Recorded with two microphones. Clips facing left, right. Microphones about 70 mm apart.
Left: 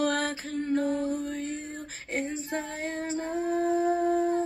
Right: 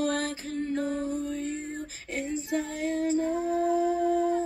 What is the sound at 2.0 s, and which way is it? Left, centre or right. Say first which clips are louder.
Female singing: left 2 dB; left.